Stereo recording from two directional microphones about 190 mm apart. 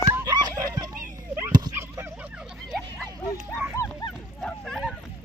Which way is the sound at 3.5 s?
5° right (ahead or behind).